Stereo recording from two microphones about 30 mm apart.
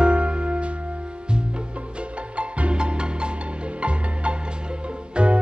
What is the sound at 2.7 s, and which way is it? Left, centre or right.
Music, right.